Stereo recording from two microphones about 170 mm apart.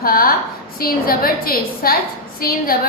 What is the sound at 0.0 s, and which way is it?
A woman's voice, 60° left (ahead or behind).